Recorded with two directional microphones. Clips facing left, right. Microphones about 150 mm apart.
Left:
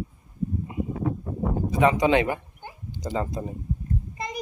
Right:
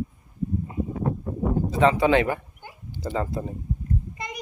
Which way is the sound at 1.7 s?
15° left (ahead or behind).